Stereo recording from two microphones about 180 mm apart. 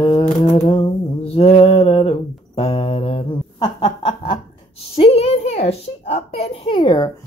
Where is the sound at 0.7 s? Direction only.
30° left (ahead or behind).